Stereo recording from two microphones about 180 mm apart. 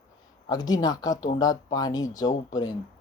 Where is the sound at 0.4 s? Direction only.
20° left (ahead or behind).